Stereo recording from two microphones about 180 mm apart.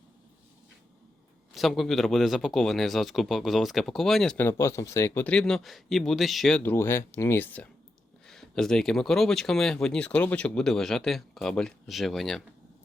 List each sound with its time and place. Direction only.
1.5 s speech: centre (ahead or behind)
6.6 s speech: 10° left (ahead or behind)